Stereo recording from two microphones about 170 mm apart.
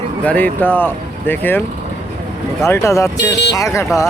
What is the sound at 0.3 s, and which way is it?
Speech, 10° left (ahead or behind).